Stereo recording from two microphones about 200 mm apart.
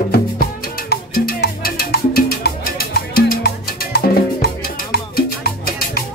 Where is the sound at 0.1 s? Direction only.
50° left (ahead or behind).